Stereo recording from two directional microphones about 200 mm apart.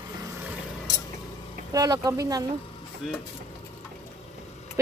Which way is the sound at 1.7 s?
20° right (ahead or behind).